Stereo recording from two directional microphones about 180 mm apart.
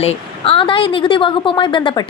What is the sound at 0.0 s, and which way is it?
A woman's voice, 35° left (ahead or behind).